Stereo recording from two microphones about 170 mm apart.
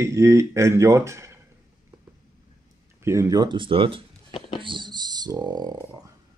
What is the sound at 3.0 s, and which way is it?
Speech, 15° right (ahead or behind).